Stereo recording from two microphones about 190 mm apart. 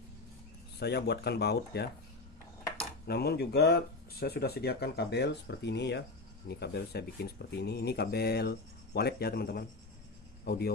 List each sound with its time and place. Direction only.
0.7 s speech: 60° left (ahead or behind)
3.1 s speech: 60° left (ahead or behind)